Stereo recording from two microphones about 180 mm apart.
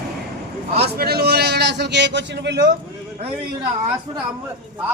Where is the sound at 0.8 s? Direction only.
60° right (ahead or behind).